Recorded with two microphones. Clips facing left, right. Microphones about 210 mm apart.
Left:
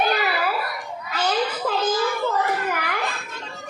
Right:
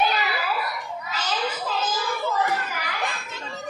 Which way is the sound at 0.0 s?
55° left (ahead or behind).